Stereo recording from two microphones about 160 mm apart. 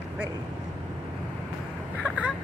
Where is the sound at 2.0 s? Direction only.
5° right (ahead or behind).